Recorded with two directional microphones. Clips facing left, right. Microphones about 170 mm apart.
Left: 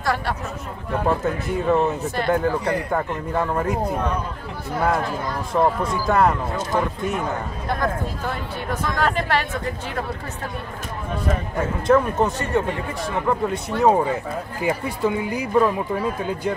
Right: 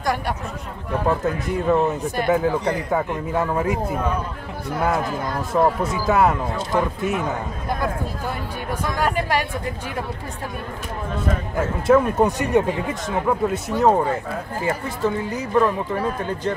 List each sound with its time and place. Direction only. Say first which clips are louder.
0.9 s a man's voice: even; centre (ahead or behind)
8.6 s speech: even; 10° right (ahead or behind)
11.5 s a man's voice: right 2 dB; 5° right (ahead or behind)
12.3 s speech: right 3 dB; 15° right (ahead or behind)
13.3 s a man's voice: right 2 dB; 5° right (ahead or behind)
14.6 s speech: left 1 dB; 15° left (ahead or behind)